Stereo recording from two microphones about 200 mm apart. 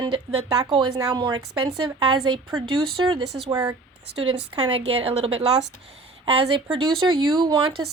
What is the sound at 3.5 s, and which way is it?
Speech, 20° right (ahead or behind).